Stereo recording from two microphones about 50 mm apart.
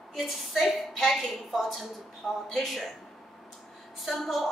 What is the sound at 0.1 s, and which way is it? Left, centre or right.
A woman's voice, centre.